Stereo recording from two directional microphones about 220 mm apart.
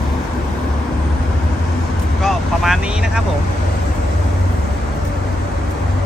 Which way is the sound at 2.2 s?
Centre (ahead or behind).